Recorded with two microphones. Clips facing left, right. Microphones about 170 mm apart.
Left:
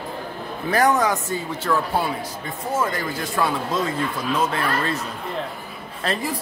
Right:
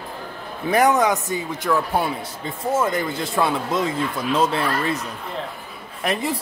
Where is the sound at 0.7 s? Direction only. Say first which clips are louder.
Right 2 dB; 20° right (ahead or behind).